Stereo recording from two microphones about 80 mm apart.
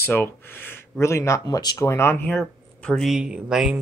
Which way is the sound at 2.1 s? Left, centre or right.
Centre.